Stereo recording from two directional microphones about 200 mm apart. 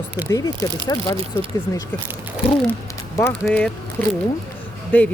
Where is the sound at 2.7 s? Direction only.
15° left (ahead or behind).